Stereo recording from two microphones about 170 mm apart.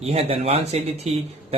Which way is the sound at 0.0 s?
35° right (ahead or behind).